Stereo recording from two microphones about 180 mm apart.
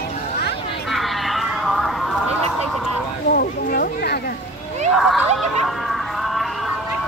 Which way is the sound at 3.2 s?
55° left (ahead or behind).